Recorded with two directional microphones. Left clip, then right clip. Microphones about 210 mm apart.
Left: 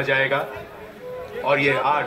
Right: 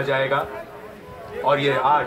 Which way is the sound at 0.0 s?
25° left (ahead or behind).